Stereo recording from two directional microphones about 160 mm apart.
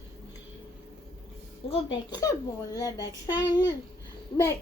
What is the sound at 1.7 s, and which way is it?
A child's voice, 30° left (ahead or behind).